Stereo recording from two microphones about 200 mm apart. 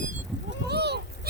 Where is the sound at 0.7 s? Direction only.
55° right (ahead or behind).